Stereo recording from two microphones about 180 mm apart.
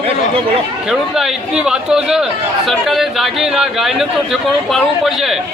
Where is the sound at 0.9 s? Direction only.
Centre (ahead or behind).